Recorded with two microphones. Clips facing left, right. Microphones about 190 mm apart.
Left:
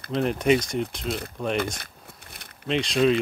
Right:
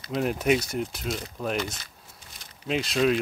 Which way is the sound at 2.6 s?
5° right (ahead or behind).